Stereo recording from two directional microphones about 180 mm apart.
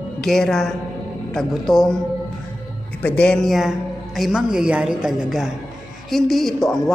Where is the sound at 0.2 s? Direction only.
5° left (ahead or behind).